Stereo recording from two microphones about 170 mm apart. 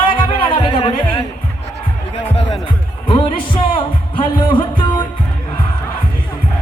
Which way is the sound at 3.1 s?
30° left (ahead or behind).